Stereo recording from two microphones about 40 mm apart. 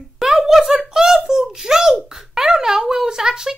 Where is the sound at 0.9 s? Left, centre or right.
Centre.